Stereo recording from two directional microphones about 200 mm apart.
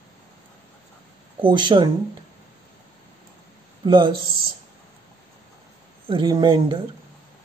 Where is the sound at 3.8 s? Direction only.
25° right (ahead or behind).